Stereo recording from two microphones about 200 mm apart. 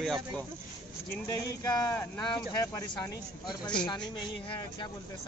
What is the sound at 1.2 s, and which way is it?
Speech, 15° left (ahead or behind).